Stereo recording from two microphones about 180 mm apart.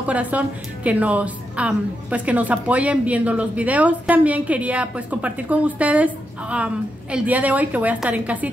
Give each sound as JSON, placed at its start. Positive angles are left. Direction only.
{"t": 0.0, "sound": "a woman's voice", "side_deg": -10}